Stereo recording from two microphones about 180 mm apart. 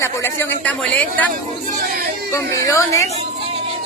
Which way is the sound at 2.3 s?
15° left (ahead or behind).